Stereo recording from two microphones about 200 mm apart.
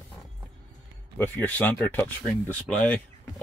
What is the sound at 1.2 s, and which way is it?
Speech, 10° left (ahead or behind).